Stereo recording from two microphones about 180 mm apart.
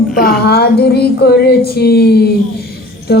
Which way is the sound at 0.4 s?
60° left (ahead or behind).